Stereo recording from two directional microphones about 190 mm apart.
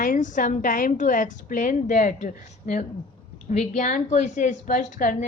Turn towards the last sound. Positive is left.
turn(degrees=45)  # may be behind; listen again after turning